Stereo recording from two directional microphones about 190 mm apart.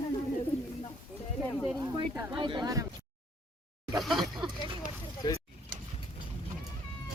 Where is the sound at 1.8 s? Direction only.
25° right (ahead or behind).